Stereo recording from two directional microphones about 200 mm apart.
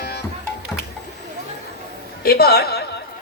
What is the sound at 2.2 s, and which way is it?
Music, 50° left (ahead or behind).